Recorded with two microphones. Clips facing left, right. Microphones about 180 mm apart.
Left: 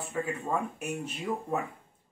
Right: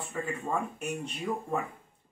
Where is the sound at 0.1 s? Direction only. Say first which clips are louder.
Left 1 dB; 5° left (ahead or behind).